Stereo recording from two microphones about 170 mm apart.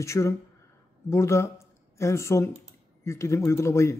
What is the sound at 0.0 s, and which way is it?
Speech, 15° left (ahead or behind).